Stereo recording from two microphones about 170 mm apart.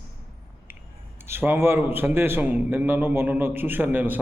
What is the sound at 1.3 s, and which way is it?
A man's voice, 10° right (ahead or behind).